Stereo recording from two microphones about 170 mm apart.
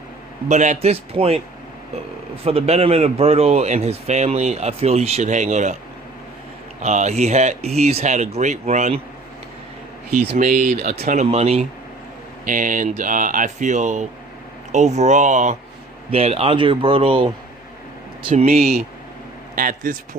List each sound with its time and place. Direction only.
0.4 s a man's voice: 45° right (ahead or behind)
2.4 s a man's voice: 35° right (ahead or behind)
6.8 s a man's voice: 40° right (ahead or behind)
10.3 s a man's voice: 50° right (ahead or behind)
12.5 s a man's voice: 50° right (ahead or behind); by 18.4 s 35° right (ahead or behind)
19.5 s speech: 55° right (ahead or behind)